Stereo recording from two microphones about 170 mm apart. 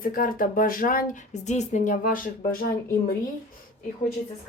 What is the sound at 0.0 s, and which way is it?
Speech, 55° left (ahead or behind).